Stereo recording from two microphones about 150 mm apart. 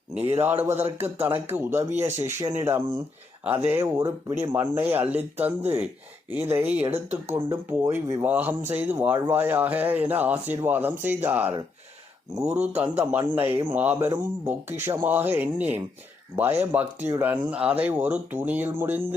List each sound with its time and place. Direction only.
0.3 s speech: 15° right (ahead or behind)
13.0 s speech: 10° right (ahead or behind)